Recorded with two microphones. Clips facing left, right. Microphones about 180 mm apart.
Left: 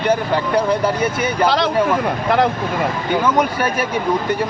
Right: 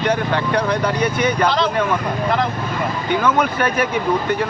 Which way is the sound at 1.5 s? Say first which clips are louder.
Left 1 dB; 70° left (ahead or behind).